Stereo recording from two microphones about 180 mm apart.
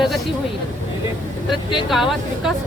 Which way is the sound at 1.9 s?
Centre (ahead or behind).